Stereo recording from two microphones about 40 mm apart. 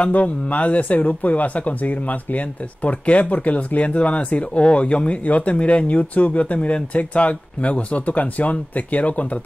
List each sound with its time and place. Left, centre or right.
0.0 s speech: left